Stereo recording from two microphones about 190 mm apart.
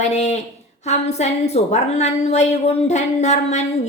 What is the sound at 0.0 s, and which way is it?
A woman's voice, 35° left (ahead or behind).